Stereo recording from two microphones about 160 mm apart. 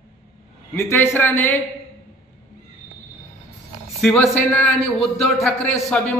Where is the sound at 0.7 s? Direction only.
15° left (ahead or behind).